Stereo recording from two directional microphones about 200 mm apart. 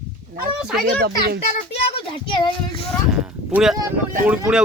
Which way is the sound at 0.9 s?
50° right (ahead or behind).